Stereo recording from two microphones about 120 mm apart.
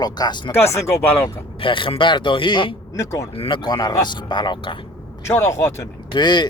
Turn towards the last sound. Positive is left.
turn(degrees=40)  # may be behind; listen again after turning